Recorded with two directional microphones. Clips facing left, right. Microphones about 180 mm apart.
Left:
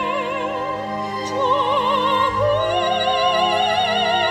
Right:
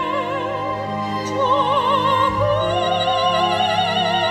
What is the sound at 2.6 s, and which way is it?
Opera, 15° left (ahead or behind).